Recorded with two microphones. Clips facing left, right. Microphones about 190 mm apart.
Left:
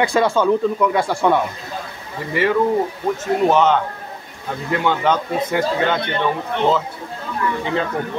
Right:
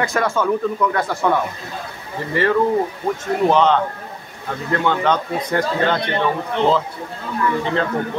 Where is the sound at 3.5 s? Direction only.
5° left (ahead or behind).